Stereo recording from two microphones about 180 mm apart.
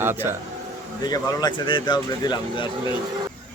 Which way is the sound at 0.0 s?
10° right (ahead or behind).